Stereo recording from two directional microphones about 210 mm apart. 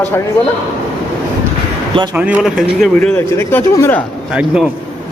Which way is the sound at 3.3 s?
15° left (ahead or behind).